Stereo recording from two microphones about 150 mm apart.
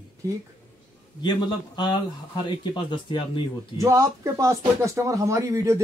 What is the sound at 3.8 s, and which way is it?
Speech, 20° right (ahead or behind).